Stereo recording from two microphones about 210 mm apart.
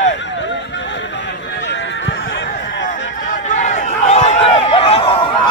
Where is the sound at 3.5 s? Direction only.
35° left (ahead or behind).